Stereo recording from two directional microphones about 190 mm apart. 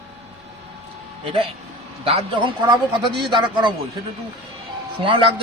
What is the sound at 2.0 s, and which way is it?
Speech, 30° right (ahead or behind).